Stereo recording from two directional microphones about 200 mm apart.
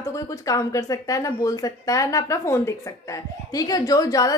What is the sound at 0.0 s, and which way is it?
A woman's voice, 15° left (ahead or behind).